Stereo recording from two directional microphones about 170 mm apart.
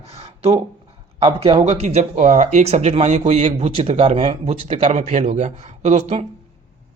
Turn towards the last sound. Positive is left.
turn(degrees=-40)  # may be behind; listen again after turning